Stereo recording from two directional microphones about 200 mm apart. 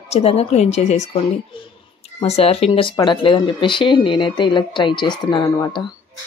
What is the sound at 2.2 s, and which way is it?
Speech, 30° left (ahead or behind).